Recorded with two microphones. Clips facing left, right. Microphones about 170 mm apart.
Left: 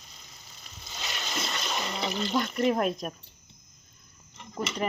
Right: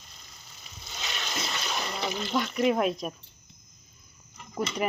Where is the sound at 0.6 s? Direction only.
5° right (ahead or behind).